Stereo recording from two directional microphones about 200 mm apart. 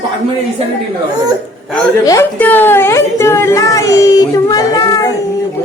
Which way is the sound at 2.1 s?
10° left (ahead or behind).